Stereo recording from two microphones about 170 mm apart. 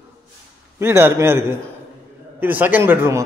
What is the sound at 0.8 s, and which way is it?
A man's voice, 15° right (ahead or behind).